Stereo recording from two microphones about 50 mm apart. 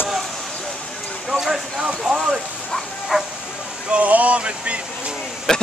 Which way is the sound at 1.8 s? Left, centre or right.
Centre.